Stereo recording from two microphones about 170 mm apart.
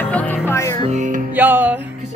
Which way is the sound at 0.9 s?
45° right (ahead or behind).